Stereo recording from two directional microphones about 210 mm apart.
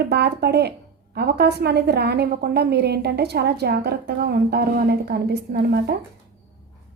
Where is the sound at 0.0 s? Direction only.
50° right (ahead or behind).